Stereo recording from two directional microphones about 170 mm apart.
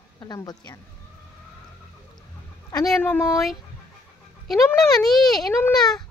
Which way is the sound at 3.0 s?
15° left (ahead or behind).